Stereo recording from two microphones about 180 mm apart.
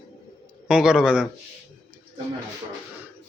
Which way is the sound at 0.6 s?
5° right (ahead or behind).